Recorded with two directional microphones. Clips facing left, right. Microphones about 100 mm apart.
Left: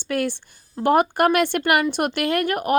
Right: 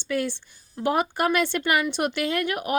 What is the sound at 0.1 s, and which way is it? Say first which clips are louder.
Speech: left 3 dB; 55° left (ahead or behind).